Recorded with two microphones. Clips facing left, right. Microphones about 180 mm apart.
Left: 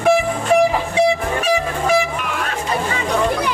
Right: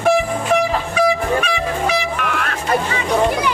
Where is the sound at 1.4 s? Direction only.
45° left (ahead or behind).